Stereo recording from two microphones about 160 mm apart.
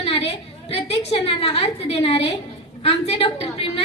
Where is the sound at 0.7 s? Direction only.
35° left (ahead or behind).